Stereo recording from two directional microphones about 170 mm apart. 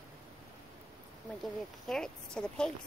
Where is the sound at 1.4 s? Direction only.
5° left (ahead or behind).